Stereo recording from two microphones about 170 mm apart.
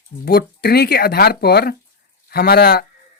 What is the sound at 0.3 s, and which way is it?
Speech, 65° left (ahead or behind).